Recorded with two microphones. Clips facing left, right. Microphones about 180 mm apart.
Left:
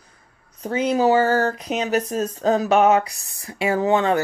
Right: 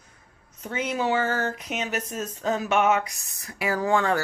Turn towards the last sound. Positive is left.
turn(degrees=20)  # may be behind; listen again after turning